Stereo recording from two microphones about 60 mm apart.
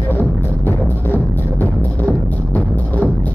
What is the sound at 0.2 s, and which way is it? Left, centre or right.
Music, left.